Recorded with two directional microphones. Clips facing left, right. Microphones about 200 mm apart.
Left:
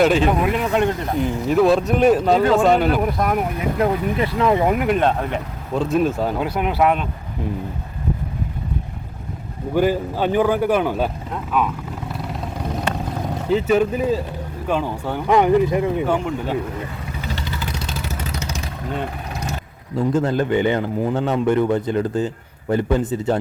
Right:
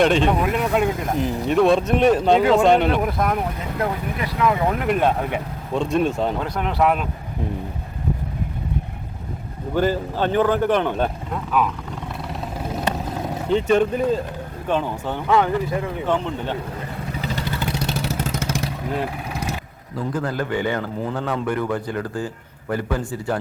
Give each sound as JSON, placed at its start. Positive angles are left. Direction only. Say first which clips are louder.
{"t": 0.0, "sound": "speech", "louder": "left 1 dB", "side_deg": 5}
{"t": 3.8, "sound": "a man's voice", "louder": "left 5 dB", "side_deg": 30}
{"t": 4.9, "sound": "speech", "louder": "left 1 dB", "side_deg": -5}
{"t": 9.7, "sound": "speech", "louder": "left 2 dB", "side_deg": 10}
{"t": 12.3, "sound": "vehicle", "louder": "even", "side_deg": -5}
{"t": 13.5, "sound": "speech", "louder": "left 1 dB", "side_deg": 5}
{"t": 18.9, "sound": "vehicle", "louder": "left 1 dB", "side_deg": 0}
{"t": 20.0, "sound": "a man's voice", "louder": "left 6 dB", "side_deg": 25}